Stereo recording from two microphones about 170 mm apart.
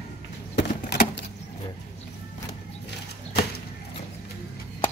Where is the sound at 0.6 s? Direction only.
80° left.